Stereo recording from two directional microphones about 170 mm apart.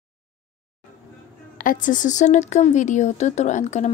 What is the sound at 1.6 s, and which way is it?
Speech, 50° left (ahead or behind).